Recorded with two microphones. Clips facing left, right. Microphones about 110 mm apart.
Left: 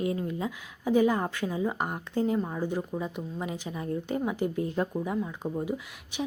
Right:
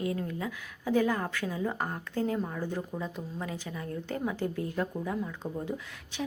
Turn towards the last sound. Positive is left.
turn(degrees=15)  # may be behind; listen again after turning